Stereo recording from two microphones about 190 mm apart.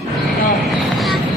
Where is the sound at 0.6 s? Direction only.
Centre (ahead or behind).